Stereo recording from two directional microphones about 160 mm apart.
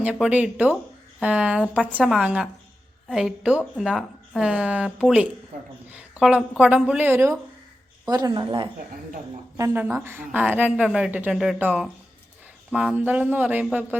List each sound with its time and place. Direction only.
0.0 s speech: 10° right (ahead or behind)
8.0 s speech: 25° right (ahead or behind)
9.6 s speech: 15° right (ahead or behind)